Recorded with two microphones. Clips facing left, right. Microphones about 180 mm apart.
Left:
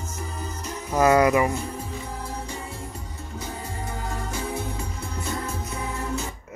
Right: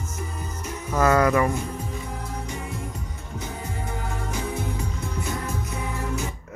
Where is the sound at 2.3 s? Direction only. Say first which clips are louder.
Right 1 dB; 30° left (ahead or behind).